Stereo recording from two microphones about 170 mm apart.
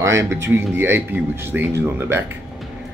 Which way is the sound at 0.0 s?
15° right (ahead or behind).